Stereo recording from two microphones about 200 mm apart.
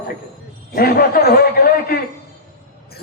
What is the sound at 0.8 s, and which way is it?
Speech, 50° left (ahead or behind).